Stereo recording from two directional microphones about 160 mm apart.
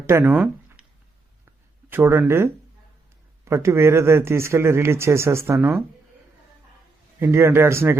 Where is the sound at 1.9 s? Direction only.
15° right (ahead or behind).